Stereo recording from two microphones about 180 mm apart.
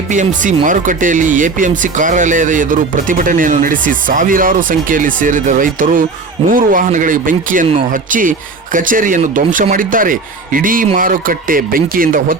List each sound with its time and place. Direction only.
0.1 s speech: 45° right (ahead or behind)